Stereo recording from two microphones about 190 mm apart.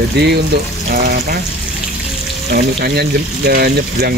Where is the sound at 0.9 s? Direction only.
50° right (ahead or behind).